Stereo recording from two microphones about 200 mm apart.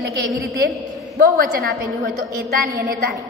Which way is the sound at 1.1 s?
45° right (ahead or behind).